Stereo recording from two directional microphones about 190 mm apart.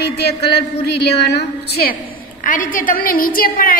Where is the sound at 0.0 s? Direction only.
60° left (ahead or behind).